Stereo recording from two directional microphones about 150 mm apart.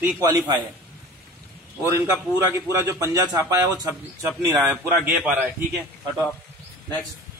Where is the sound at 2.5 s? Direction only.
20° right (ahead or behind).